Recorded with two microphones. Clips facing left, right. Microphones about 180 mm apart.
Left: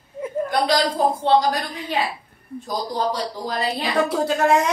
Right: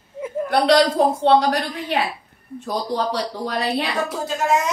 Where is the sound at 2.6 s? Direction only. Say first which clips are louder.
Right 1 dB; 70° right (ahead or behind).